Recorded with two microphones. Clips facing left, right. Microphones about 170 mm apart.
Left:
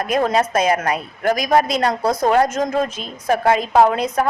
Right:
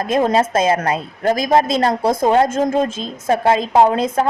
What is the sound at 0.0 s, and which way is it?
A woman's voice, 25° right (ahead or behind).